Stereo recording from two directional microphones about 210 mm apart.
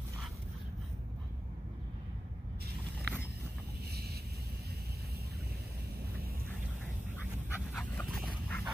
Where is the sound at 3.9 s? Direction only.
50° right (ahead or behind).